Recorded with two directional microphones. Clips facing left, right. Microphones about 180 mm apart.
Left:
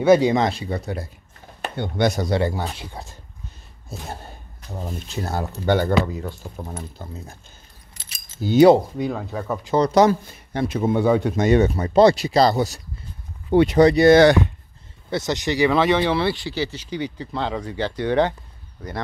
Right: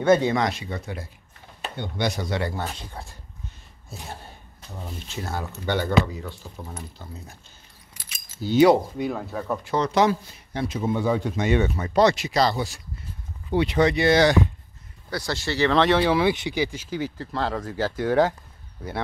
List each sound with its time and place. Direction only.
0.0 s speech: 10° left (ahead or behind)
0.3 s speech: 30° left (ahead or behind)
1.6 s speech: 50° left (ahead or behind); by 2.5 s 35° left (ahead or behind)
2.7 s speech: 10° left (ahead or behind)
4.7 s speech: 35° left (ahead or behind)
8.1 s keys jangling: 45° left (ahead or behind)
8.9 s speech: centre (ahead or behind)
9.8 s speech: 40° left (ahead or behind); by 11.3 s 60° left (ahead or behind)
11.3 s speech: 40° left (ahead or behind); by 14.4 s 55° left (ahead or behind)
15.0 s speech: 20° left (ahead or behind); by 18.9 s 5° right (ahead or behind)